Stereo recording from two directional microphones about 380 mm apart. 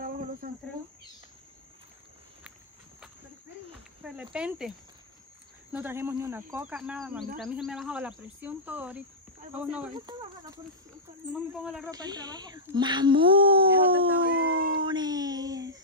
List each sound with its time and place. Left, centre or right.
4.0 s speech: centre
14.0 s howl: right
14.8 s a sound: centre